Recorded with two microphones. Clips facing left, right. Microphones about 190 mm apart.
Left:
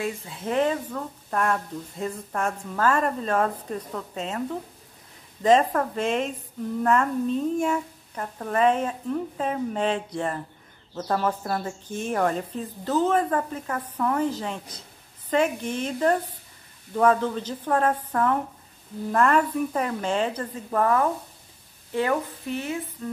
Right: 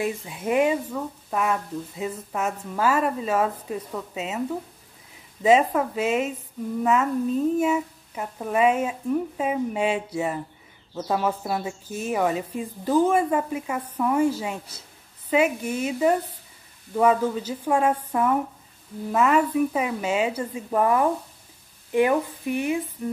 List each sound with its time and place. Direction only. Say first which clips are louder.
0.0 s speech: right 3 dB; 15° right (ahead or behind)